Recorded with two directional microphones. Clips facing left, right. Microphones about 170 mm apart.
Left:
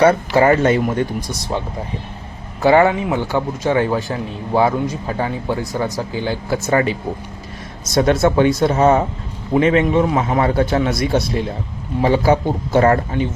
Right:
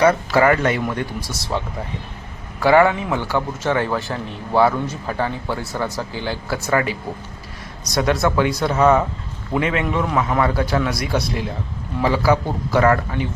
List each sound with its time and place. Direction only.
0.0 s a man's voice: 25° left (ahead or behind)